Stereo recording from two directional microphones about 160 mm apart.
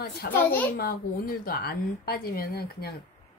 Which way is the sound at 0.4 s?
15° left (ahead or behind).